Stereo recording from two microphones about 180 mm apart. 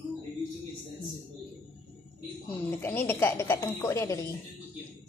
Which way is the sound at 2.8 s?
10° left (ahead or behind).